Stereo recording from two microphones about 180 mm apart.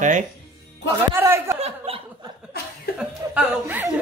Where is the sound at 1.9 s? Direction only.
30° right (ahead or behind).